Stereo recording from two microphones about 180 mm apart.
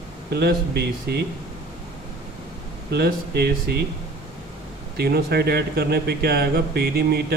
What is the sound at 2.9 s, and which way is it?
Speech, 65° right (ahead or behind).